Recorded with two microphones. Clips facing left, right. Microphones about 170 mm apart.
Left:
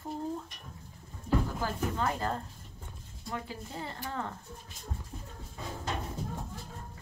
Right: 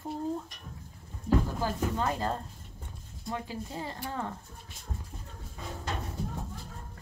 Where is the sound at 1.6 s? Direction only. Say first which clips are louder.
Right 2 dB; 20° right (ahead or behind).